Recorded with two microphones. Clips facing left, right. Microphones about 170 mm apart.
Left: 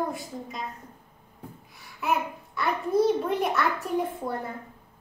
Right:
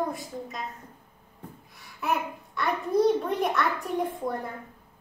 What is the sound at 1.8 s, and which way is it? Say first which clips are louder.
A child's voice: left 1 dB; centre (ahead or behind).